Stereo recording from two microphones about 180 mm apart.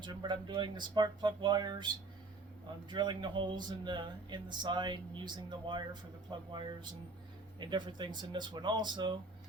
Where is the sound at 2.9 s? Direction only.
25° right (ahead or behind).